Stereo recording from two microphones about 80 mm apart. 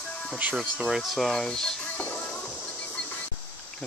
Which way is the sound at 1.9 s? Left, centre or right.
Left.